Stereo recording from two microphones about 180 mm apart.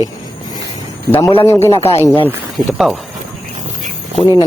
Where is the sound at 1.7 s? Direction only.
30° left (ahead or behind).